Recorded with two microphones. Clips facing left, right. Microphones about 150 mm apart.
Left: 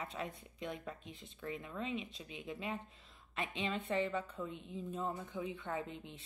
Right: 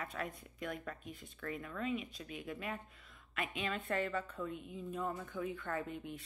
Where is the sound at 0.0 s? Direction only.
25° left (ahead or behind).